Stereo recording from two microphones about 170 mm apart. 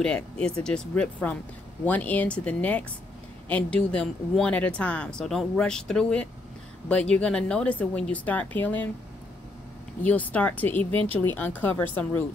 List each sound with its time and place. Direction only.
0.0 s a woman's voice: 5° left (ahead or behind)
10.0 s a woman's voice: 10° left (ahead or behind)